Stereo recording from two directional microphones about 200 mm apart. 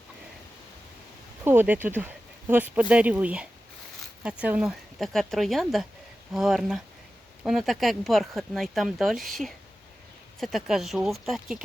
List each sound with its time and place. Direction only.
1.5 s speech: 10° right (ahead or behind)